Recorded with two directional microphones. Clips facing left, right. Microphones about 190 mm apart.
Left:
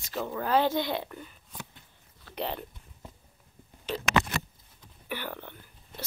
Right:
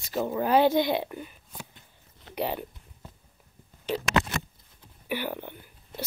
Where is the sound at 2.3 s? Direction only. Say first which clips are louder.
Right 4 dB; 10° right (ahead or behind).